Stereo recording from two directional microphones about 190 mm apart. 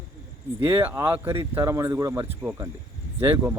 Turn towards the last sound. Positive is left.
turn(degrees=-15)  # may be behind; listen again after turning